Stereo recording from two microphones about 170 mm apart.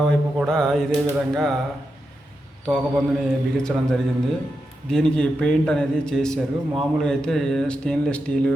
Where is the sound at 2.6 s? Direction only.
Centre (ahead or behind).